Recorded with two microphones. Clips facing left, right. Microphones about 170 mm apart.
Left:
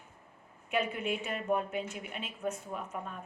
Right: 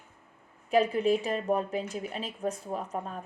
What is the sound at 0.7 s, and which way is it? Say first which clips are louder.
Speech: right 8 dB; 35° right (ahead or behind).